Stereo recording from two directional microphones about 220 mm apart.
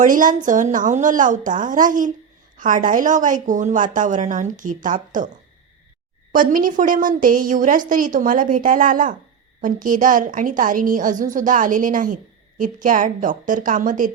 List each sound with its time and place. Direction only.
0.0 s a woman's voice: 35° right (ahead or behind)
6.3 s a woman's voice: 40° right (ahead or behind)